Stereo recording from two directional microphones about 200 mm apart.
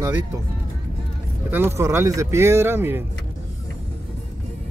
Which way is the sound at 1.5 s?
10° right (ahead or behind).